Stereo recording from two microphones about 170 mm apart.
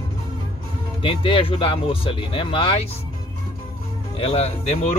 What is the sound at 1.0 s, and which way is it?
Speech, 30° left (ahead or behind).